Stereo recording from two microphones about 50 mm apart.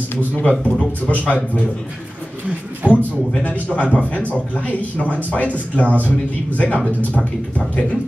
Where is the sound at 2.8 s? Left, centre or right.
Right.